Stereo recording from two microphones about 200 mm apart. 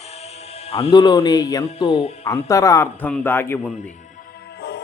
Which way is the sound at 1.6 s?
30° left (ahead or behind).